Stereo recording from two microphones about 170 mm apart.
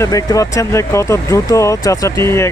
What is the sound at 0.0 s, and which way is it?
Speech, 20° left (ahead or behind).